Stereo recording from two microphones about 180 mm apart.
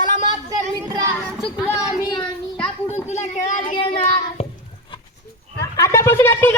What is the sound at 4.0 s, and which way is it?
Child singing, 35° left (ahead or behind).